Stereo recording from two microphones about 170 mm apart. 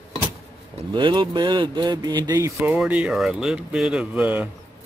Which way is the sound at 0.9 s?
30° right (ahead or behind).